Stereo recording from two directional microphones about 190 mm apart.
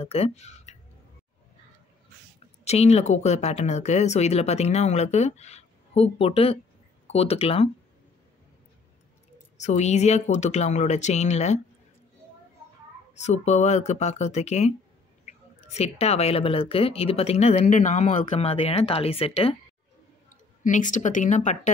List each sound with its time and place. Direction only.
0.0 s speech: 30° left (ahead or behind)
2.6 s speech: 35° left (ahead or behind)
9.6 s speech: 35° left (ahead or behind)
13.1 s speech: 35° left (ahead or behind)
20.6 s speech: 40° left (ahead or behind)